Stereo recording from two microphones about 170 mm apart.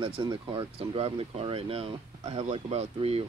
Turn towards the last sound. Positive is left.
turn(degrees=-35)  # may be behind; listen again after turning